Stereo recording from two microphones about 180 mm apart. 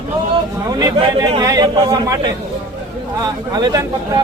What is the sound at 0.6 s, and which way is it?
A man's voice, 20° right (ahead or behind).